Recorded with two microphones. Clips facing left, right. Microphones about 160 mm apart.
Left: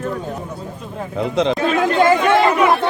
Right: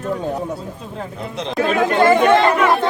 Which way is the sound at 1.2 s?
90° left.